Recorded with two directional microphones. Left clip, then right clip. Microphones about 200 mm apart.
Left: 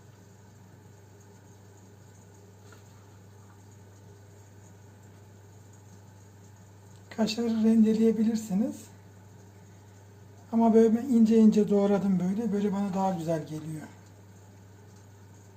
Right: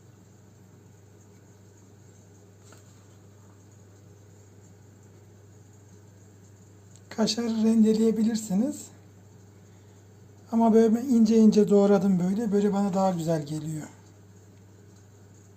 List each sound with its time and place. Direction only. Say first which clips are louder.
7.1 s speech: right 2 dB; 30° right (ahead or behind)
10.5 s speech: right 1 dB; 25° right (ahead or behind)